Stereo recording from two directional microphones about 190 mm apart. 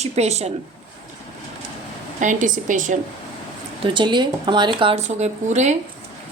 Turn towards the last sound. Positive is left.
turn(degrees=-35)  # may be behind; listen again after turning